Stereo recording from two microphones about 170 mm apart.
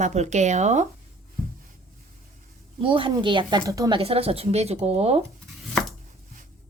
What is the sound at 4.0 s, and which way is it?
Speech, 35° right (ahead or behind).